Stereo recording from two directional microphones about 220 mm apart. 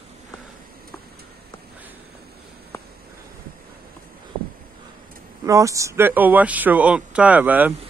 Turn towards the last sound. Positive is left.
turn(degrees=-5)  # may be behind; listen again after turning